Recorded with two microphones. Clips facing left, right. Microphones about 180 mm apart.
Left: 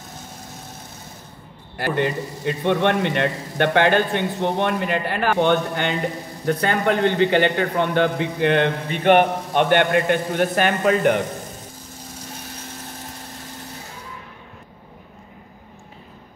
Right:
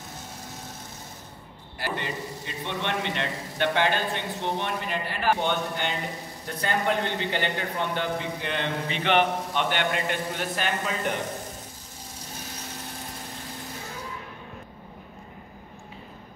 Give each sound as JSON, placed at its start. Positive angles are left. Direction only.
{"t": 1.8, "sound": "a man's voice", "side_deg": 55}